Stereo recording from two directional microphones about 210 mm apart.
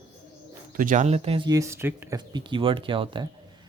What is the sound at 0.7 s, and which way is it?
Speech, 40° right (ahead or behind).